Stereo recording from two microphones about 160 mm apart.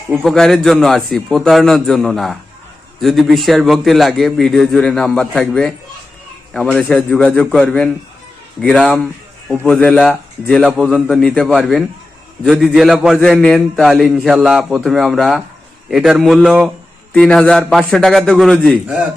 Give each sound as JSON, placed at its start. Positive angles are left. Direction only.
{"t": 0.1, "sound": "a man's voice", "side_deg": 0}
{"t": 17.1, "sound": "a man's voice", "side_deg": 5}